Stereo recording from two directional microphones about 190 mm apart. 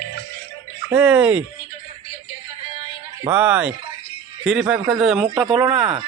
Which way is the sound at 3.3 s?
10° right (ahead or behind).